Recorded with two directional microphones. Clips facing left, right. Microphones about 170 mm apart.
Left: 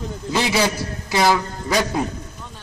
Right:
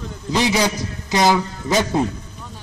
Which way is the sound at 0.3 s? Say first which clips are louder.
Right 1 dB; 15° right (ahead or behind).